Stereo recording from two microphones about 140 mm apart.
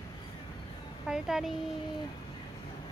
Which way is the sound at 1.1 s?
5° right (ahead or behind).